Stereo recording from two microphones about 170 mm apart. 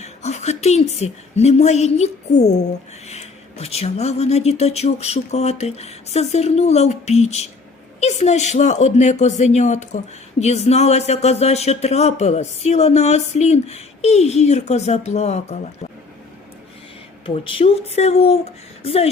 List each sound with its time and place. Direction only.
0.0 s a woman's voice: 40° left (ahead or behind)
17.2 s speech: 30° left (ahead or behind)